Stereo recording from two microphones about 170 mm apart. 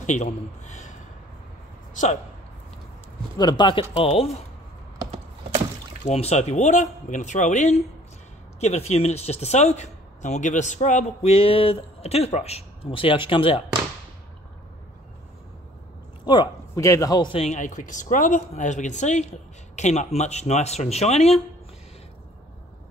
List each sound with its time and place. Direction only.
0.0 s a man's voice: 45° left (ahead or behind)
3.3 s a man's voice: 25° left (ahead or behind)
6.0 s speech: 40° left (ahead or behind)
16.3 s a man's voice: 20° left (ahead or behind)
17.6 s speech: 45° left (ahead or behind)